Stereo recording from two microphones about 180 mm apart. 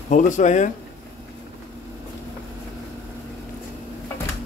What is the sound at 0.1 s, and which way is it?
Speech, 45° left (ahead or behind).